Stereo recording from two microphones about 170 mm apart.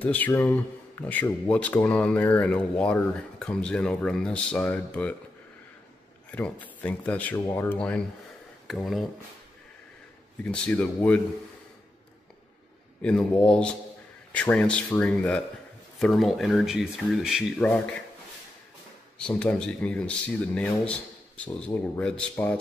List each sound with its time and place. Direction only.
0.0 s speech: 10° left (ahead or behind)
6.3 s speech: 10° left (ahead or behind)
10.4 s speech: 10° left (ahead or behind)
13.0 s speech: 5° left (ahead or behind)
17.6 s speech: 10° left (ahead or behind)
19.1 s speech: 5° left (ahead or behind)